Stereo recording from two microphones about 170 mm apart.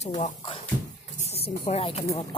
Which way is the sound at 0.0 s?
40° left (ahead or behind).